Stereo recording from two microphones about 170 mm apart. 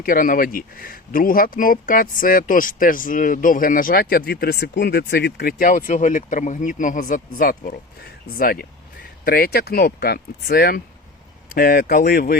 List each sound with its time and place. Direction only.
0.0 s speech: 55° left (ahead or behind)